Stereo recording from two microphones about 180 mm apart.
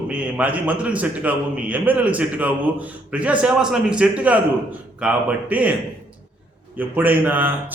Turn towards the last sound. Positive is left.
turn(degrees=-10)  # may be behind; listen again after turning